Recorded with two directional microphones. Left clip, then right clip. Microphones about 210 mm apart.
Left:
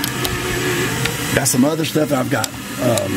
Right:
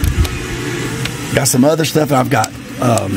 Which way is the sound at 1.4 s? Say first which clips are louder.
Right 6 dB; 25° right (ahead or behind).